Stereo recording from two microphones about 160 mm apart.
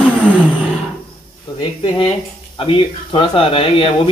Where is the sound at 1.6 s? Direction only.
30° left (ahead or behind).